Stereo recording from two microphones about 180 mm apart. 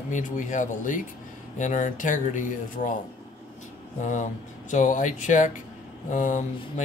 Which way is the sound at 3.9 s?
45° left (ahead or behind).